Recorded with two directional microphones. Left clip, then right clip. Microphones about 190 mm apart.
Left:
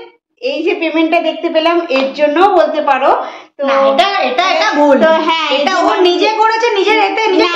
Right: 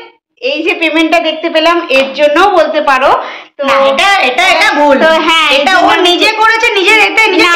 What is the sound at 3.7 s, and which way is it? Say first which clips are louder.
A woman's voice: right 3 dB; 15° left (ahead or behind).